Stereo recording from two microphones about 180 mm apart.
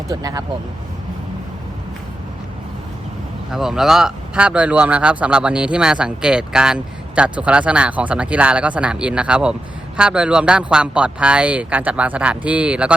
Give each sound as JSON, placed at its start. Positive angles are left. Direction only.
{"t": 0.1, "sound": "speech", "side_deg": -20}
{"t": 3.5, "sound": "speech", "side_deg": 0}